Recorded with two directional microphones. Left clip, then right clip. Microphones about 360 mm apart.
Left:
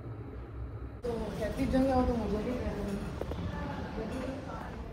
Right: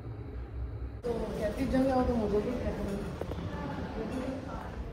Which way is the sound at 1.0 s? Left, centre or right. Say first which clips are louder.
Right 2 dB; centre.